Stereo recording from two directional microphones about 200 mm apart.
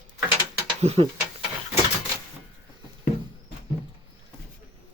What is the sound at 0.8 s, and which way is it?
Speech, 30° right (ahead or behind).